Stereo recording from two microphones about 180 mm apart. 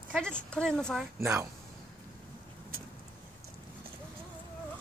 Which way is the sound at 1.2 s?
15° right (ahead or behind).